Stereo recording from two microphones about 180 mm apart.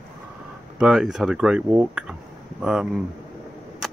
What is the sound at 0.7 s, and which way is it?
Speech, 5° right (ahead or behind).